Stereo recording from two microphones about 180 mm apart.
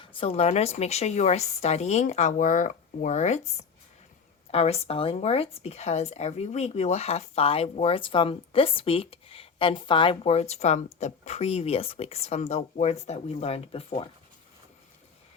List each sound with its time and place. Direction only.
0.0 s speech: 30° left (ahead or behind)
4.5 s speech: 35° left (ahead or behind)